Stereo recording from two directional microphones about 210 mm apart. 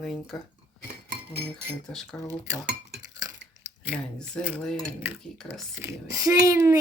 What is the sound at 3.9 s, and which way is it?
Cutlery, 5° left (ahead or behind).